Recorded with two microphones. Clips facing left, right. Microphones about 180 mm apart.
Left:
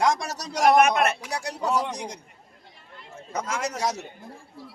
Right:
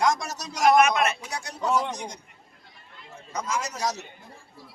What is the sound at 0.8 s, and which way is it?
Speech, 60° left (ahead or behind).